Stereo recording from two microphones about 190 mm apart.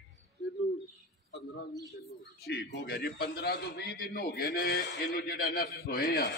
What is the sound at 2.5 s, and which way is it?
A man's voice, 55° left (ahead or behind).